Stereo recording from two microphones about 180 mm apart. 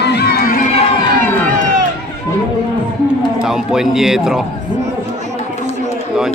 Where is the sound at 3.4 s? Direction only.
5° right (ahead or behind).